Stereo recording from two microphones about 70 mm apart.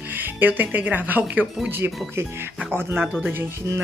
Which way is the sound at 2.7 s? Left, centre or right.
Right.